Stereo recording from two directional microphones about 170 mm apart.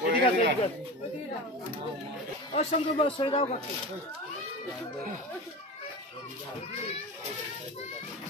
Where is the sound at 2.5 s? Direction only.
30° left (ahead or behind).